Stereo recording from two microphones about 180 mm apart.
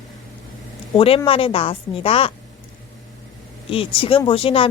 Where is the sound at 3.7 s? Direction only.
30° left (ahead or behind).